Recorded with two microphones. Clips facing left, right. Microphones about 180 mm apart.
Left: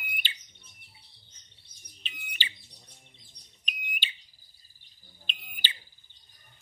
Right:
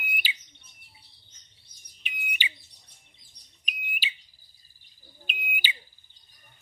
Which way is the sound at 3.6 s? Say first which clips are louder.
Right 2 dB; 5° right (ahead or behind).